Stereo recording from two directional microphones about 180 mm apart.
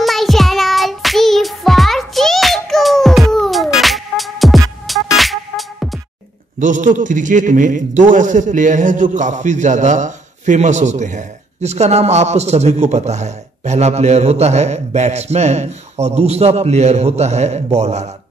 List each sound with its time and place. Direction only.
0.0 s child singing: centre (ahead or behind)
5.1 s music: centre (ahead or behind)
6.6 s a man's voice: 45° right (ahead or behind)